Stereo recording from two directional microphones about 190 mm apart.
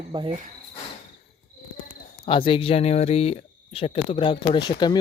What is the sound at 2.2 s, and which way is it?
Speech, 25° left (ahead or behind).